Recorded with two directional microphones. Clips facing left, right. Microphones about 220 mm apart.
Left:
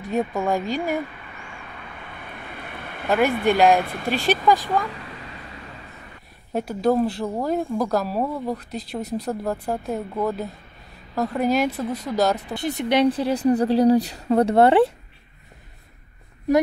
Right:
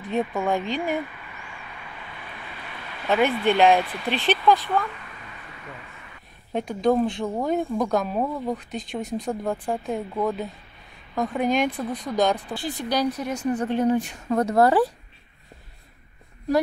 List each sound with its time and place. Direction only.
0.5 s speech: 10° left (ahead or behind)
2.4 s waves: 55° left (ahead or behind)
3.4 s speech: 5° left (ahead or behind)
3.8 s speech: 50° left (ahead or behind)
4.5 s speech: 10° left (ahead or behind)
6.5 s speech: 5° left (ahead or behind)
12.4 s speech: 25° left (ahead or behind)